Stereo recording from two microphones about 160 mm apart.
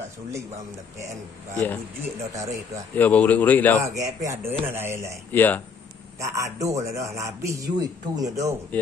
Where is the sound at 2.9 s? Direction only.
10° left (ahead or behind).